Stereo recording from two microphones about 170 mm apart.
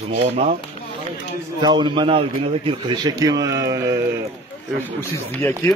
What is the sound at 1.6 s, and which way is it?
A man's voice, 25° right (ahead or behind).